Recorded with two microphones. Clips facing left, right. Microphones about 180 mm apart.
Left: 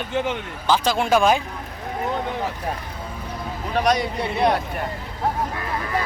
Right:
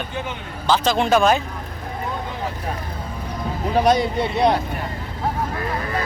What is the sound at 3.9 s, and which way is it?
Speech, centre (ahead or behind).